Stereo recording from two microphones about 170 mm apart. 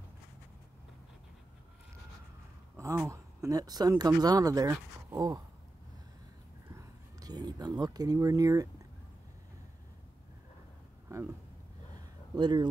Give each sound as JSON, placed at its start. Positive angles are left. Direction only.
{"t": 3.1, "sound": "speech", "side_deg": -20}
{"t": 6.7, "sound": "speech", "side_deg": -20}
{"t": 11.9, "sound": "a sound", "side_deg": -25}